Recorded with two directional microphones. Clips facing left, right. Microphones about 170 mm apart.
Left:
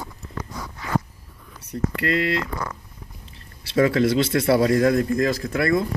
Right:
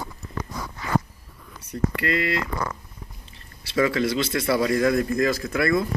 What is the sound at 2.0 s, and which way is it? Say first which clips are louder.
Speech: left 4 dB; 40° left (ahead or behind).